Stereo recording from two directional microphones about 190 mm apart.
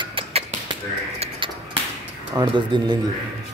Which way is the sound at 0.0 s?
25° right (ahead or behind).